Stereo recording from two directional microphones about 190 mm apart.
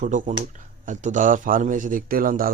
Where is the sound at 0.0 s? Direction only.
40° right (ahead or behind).